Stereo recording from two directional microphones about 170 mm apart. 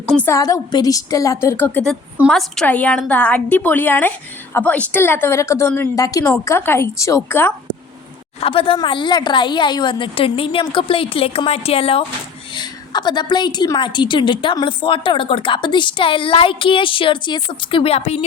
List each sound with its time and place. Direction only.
0.1 s a woman's voice: 10° left (ahead or behind)
0.3 s a woman's voice: 20° left (ahead or behind)
8.4 s a woman's voice: 35° left (ahead or behind)